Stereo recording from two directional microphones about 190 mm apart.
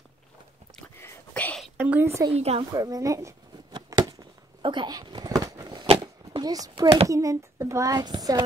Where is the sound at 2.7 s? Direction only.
20° right (ahead or behind).